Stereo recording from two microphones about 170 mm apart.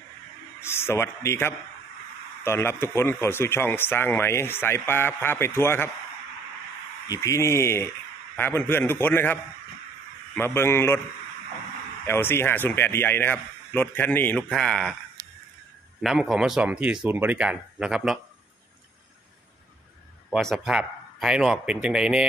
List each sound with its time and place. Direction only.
0.6 s speech: 15° left (ahead or behind)
7.1 s speech: 20° left (ahead or behind)
12.0 s speech: 15° left (ahead or behind)
16.0 s speech: centre (ahead or behind)
20.2 s speech: centre (ahead or behind)